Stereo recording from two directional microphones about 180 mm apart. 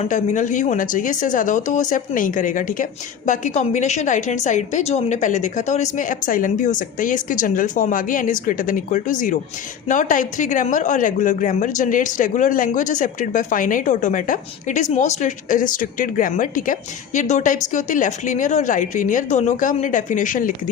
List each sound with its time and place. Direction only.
0.0 s a woman's voice: 45° left (ahead or behind)